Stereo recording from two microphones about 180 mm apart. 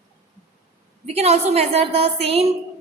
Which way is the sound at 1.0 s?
35° right (ahead or behind).